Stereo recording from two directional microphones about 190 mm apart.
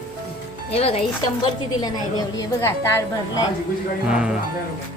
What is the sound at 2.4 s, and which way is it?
A woman's voice, 15° left (ahead or behind).